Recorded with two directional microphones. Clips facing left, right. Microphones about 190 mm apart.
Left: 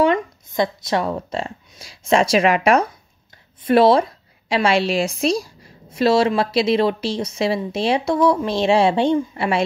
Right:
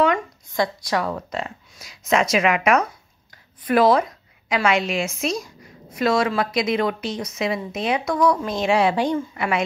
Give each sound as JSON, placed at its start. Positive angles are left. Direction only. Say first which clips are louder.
{"t": 0.0, "sound": "a woman's voice", "louder": "left 3 dB", "side_deg": 25}